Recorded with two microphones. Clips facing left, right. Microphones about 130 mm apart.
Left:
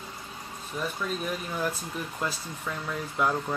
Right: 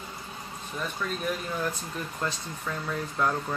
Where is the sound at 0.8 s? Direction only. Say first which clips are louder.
Left 2 dB; 5° left (ahead or behind).